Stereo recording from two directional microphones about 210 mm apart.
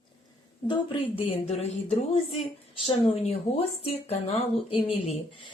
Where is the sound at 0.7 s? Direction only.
25° left (ahead or behind).